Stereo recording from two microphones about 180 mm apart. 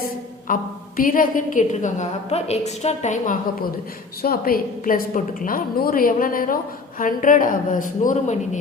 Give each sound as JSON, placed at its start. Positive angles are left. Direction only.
{"t": 0.0, "sound": "a woman's voice", "side_deg": 50}
{"t": 4.2, "sound": "a woman's voice", "side_deg": 55}